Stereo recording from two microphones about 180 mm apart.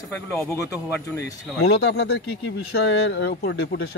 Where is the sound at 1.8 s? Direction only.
65° left (ahead or behind).